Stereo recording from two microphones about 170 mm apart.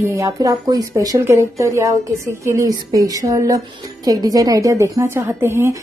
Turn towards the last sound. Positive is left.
turn(degrees=-15)  # may be behind; listen again after turning